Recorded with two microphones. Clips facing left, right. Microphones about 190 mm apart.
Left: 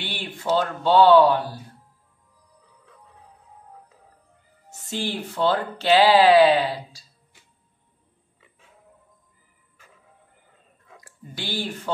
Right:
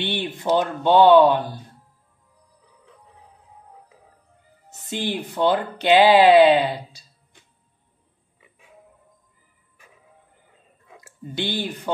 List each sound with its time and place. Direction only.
0.0 s speech: 20° right (ahead or behind)
4.6 s speech: 20° right (ahead or behind)
8.4 s pig: 15° right (ahead or behind)
11.1 s speech: 20° right (ahead or behind)